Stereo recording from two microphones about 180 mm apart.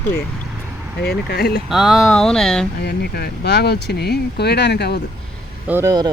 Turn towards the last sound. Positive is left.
turn(degrees=-10)  # may be behind; listen again after turning